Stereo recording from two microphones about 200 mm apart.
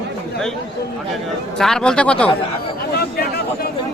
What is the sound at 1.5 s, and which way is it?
Speech, centre (ahead or behind).